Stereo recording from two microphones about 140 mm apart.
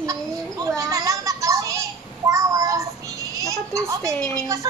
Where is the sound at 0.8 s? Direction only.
20° right (ahead or behind).